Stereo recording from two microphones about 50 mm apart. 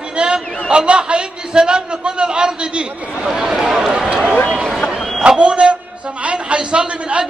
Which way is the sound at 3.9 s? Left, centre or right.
Centre.